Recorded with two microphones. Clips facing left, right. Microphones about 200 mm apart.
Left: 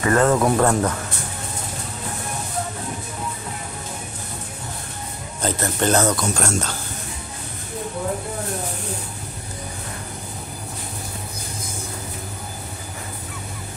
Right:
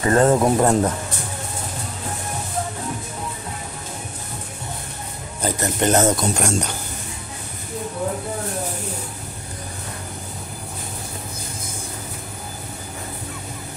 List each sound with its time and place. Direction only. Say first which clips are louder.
0.0 s speech: right 1 dB; 25° right (ahead or behind)
5.4 s speech: right 1 dB; 15° right (ahead or behind)